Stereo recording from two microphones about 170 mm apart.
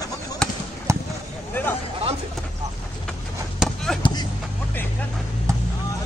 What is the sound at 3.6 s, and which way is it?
Chop, centre (ahead or behind).